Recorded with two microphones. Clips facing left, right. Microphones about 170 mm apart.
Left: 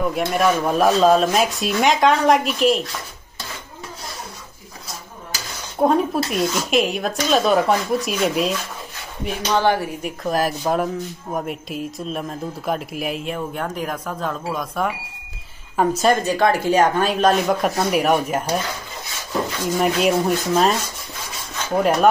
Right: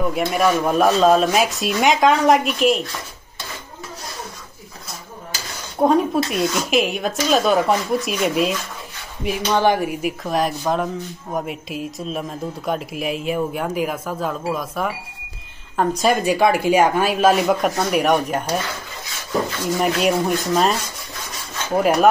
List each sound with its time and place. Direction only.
0.1 s speech: centre (ahead or behind)
5.8 s speech: centre (ahead or behind)
9.6 s speech: 15° right (ahead or behind)
10.2 s speech: centre (ahead or behind)
16.1 s speech: 10° right (ahead or behind)
19.8 s speech: centre (ahead or behind)
21.7 s speech: 5° right (ahead or behind)